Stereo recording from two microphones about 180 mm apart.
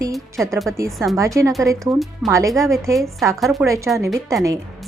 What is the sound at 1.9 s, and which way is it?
Speech, centre (ahead or behind).